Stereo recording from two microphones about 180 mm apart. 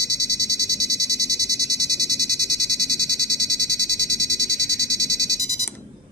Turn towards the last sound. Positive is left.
turn(degrees=-20)  # may be behind; listen again after turning